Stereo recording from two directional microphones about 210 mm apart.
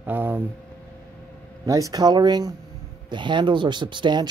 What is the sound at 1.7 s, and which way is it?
Speech, 15° right (ahead or behind).